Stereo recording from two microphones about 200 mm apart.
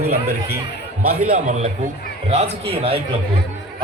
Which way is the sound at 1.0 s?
45° right (ahead or behind).